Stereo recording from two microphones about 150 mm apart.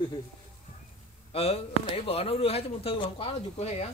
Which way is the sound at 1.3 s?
40° left (ahead or behind).